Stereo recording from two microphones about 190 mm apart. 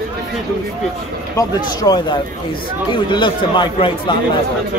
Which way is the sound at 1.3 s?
20° left (ahead or behind).